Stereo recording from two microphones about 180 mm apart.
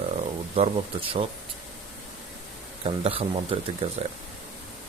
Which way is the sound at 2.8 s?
30° right (ahead or behind).